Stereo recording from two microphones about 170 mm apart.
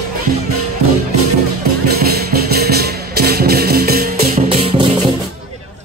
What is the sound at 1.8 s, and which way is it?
Music, 65° right (ahead or behind).